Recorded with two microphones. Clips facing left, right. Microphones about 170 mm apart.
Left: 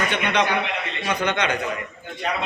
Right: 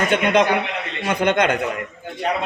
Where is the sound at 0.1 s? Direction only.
45° right (ahead or behind).